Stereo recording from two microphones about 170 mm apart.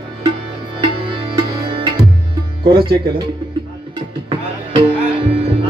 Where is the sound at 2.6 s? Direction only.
30° right (ahead or behind).